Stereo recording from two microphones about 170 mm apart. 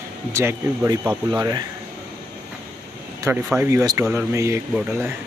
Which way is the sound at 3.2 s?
10° right (ahead or behind).